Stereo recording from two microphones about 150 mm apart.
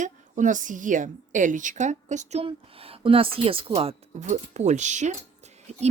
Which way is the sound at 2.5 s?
40° right (ahead or behind).